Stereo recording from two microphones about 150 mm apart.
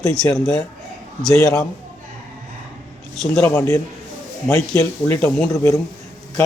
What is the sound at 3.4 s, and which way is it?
Speech, 15° left (ahead or behind).